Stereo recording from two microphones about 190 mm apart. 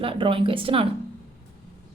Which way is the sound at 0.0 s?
25° right (ahead or behind).